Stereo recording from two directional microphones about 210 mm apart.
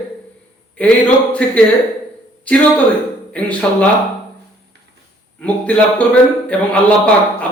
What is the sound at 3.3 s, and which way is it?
Speech, 5° left (ahead or behind).